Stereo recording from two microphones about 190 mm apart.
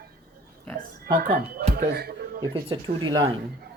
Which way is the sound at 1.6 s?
50° right (ahead or behind).